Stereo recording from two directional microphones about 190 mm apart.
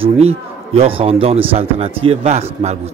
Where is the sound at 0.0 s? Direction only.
30° right (ahead or behind).